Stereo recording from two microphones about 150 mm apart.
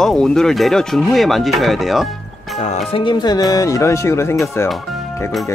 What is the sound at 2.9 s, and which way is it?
Speech, 30° left (ahead or behind).